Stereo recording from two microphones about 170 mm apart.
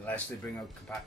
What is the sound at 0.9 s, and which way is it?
Speech, 5° left (ahead or behind).